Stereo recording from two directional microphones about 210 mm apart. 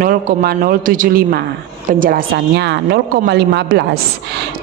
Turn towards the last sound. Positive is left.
turn(degrees=-50)  # may be behind; listen again after turning